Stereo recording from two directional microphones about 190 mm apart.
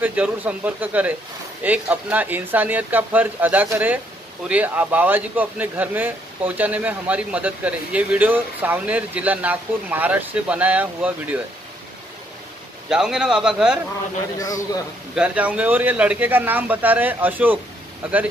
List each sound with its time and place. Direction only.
0.0 s speech: 10° right (ahead or behind)
12.9 s a man's voice: 5° right (ahead or behind)
14.4 s a man's voice: 20° left (ahead or behind)
15.1 s speech: 5° right (ahead or behind)